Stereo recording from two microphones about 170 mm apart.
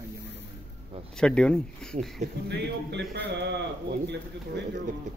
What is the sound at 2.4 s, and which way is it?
Speech, 90° right.